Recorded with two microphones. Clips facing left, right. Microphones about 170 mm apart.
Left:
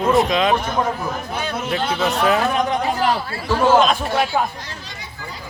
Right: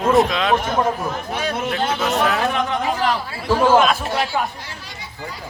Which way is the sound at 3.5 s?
10° right (ahead or behind).